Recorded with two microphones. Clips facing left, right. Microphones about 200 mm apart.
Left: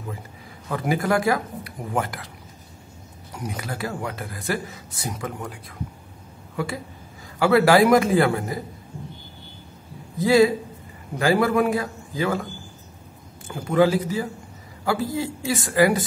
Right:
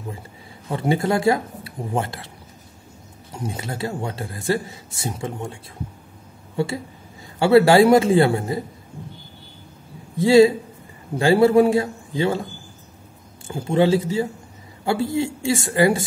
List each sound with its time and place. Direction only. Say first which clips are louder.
0.7 s a man's voice: right 2 dB; 25° right (ahead or behind)
3.3 s a man's voice: right 2 dB; 25° right (ahead or behind)
10.1 s a man's voice: right 4 dB; 30° right (ahead or behind)
13.5 s a man's voice: right 1 dB; 25° right (ahead or behind)